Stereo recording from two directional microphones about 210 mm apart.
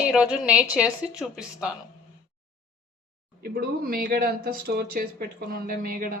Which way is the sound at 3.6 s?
45° right (ahead or behind).